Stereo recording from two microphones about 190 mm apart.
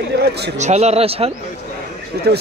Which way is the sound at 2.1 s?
55° right (ahead or behind).